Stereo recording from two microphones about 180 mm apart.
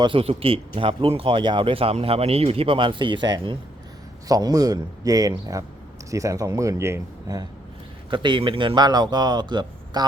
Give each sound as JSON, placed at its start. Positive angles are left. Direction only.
{"t": 0.0, "sound": "a man's voice", "side_deg": -30}
{"t": 8.1, "sound": "speech", "side_deg": -25}